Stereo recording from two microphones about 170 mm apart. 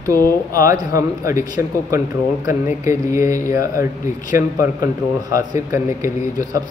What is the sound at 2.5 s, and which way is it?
A man's voice, 15° right (ahead or behind).